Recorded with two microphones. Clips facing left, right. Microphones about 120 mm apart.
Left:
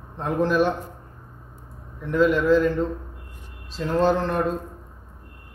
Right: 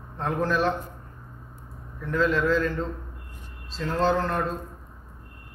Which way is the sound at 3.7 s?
15° left (ahead or behind).